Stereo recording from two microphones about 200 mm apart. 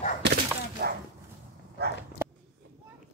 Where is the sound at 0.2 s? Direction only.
55° right (ahead or behind).